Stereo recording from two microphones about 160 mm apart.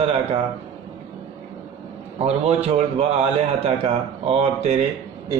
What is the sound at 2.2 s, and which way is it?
A man's voice, 40° right (ahead or behind).